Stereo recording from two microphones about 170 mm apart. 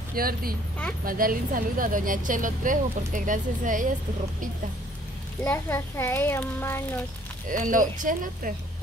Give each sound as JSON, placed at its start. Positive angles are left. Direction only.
{"t": 0.1, "sound": "a woman's voice", "side_deg": -60}
{"t": 5.4, "sound": "a child's voice", "side_deg": 15}
{"t": 7.4, "sound": "a woman's voice", "side_deg": -50}